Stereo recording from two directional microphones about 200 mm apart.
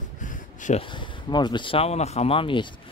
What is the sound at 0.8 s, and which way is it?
Speech, 25° left (ahead or behind).